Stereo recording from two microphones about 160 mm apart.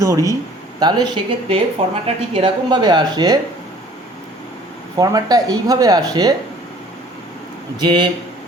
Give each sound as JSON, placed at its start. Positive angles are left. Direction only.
{"t": 0.0, "sound": "speech", "side_deg": -20}
{"t": 4.9, "sound": "speech", "side_deg": -20}
{"t": 7.8, "sound": "speech", "side_deg": -30}